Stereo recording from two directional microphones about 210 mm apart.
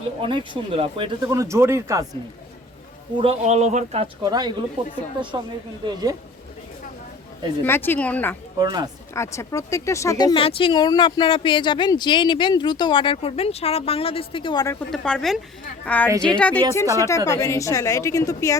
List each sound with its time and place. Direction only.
0.2 s speech: 20° right (ahead or behind)
3.2 s a man's voice: 30° right (ahead or behind)
5.8 s speech: 20° right (ahead or behind)
7.6 s a woman's voice: 10° left (ahead or behind)
8.5 s a man's voice: 20° right (ahead or behind)
9.1 s speech: 15° left (ahead or behind)
14.8 s a woman's voice: 5° left (ahead or behind)